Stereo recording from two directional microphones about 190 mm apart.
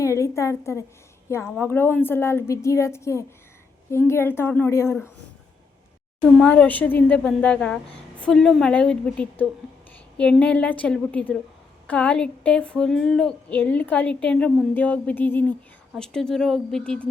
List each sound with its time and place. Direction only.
0.0 s a woman's voice: 15° left (ahead or behind)
6.4 s a woman's voice: 5° left (ahead or behind)